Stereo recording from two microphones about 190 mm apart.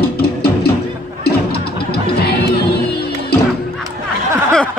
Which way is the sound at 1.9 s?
55° left (ahead or behind).